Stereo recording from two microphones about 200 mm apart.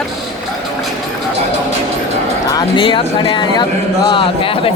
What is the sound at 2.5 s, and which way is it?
Speech, 20° left (ahead or behind).